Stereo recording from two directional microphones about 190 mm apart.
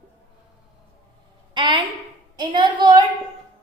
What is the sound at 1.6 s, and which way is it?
A woman's voice, 25° right (ahead or behind).